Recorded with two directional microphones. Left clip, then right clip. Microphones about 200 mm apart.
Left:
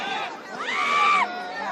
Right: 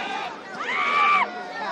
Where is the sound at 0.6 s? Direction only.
35° left (ahead or behind).